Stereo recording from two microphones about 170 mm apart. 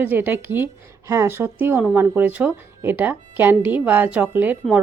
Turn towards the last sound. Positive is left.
turn(degrees=-10)  # may be behind; listen again after turning